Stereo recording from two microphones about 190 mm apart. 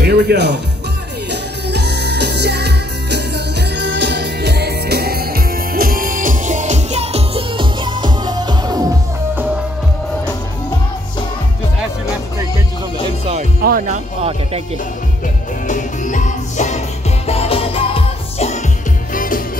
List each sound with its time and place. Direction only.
0.0 s speech: 60° right (ahead or behind)
1.3 s music: 60° right (ahead or behind); by 9.4 s 20° right (ahead or behind)
13.2 s music: 35° right (ahead or behind)
13.7 s music: 45° right (ahead or behind)
15.6 s music: 40° left (ahead or behind)
19.1 s music: 45° left (ahead or behind)